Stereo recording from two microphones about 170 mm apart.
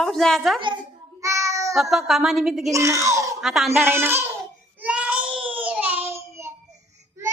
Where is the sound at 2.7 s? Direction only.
20° right (ahead or behind).